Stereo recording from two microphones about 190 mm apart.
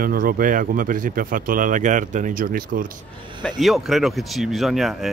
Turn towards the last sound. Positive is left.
turn(degrees=0)  # may be behind; listen again after turning